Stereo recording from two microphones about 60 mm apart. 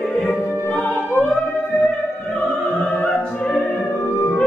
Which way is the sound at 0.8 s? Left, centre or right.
Centre.